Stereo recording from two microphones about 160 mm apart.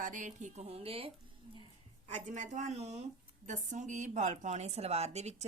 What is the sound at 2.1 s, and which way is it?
A woman's voice, 50° right (ahead or behind).